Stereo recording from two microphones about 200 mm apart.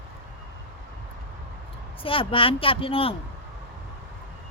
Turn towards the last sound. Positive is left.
turn(degrees=30)  # may be behind; listen again after turning